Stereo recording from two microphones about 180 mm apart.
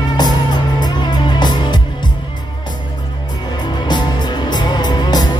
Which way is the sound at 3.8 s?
25° left (ahead or behind).